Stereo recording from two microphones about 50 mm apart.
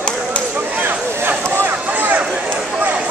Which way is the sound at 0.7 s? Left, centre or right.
Right.